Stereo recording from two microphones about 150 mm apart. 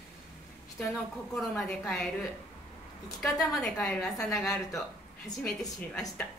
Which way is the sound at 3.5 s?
5° left (ahead or behind).